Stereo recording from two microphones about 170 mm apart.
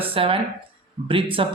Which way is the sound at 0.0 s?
35° right (ahead or behind).